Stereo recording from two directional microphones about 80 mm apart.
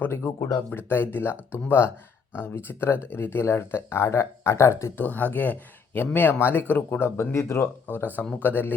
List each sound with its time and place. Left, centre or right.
0.0 s speech: left
5.0 s speech: left
7.9 s speech: left